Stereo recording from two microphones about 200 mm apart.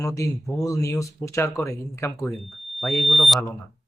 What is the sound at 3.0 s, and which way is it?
Smoke detector, centre (ahead or behind).